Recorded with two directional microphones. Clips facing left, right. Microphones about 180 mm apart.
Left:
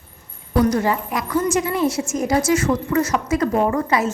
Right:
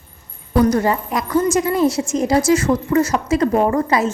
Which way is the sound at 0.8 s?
40° right (ahead or behind).